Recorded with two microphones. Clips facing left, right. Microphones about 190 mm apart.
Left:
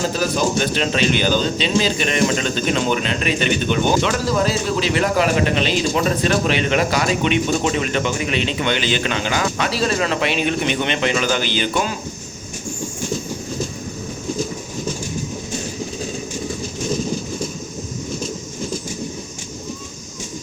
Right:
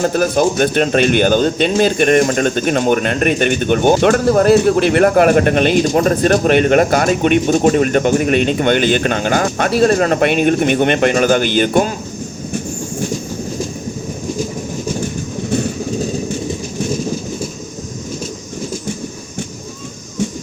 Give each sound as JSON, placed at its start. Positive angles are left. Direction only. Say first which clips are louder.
{"t": 0.0, "sound": "speech", "louder": "right 6 dB", "side_deg": -55}